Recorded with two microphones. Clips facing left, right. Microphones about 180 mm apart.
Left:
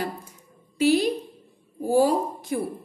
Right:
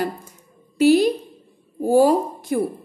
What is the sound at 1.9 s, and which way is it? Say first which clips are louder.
Speech: right 5 dB; 50° right (ahead or behind).